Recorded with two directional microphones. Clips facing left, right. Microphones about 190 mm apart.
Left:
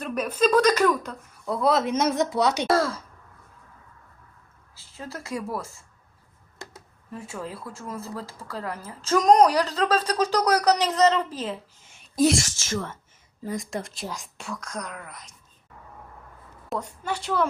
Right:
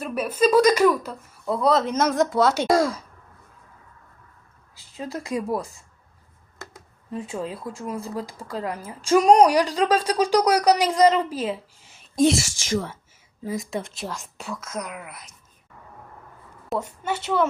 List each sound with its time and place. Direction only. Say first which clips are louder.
0.0 s speech: right 2 dB; 5° right (ahead or behind)
2.6 s speech: right 3 dB; 15° right (ahead or behind)
4.7 s speech: right 6 dB; 15° right (ahead or behind)
12.1 s speech: right 2 dB; 5° left (ahead or behind)
12.4 s speech: right 4 dB; 15° right (ahead or behind)
13.4 s speech: right 2 dB; centre (ahead or behind)
17.0 s speech: right 3 dB; 5° right (ahead or behind)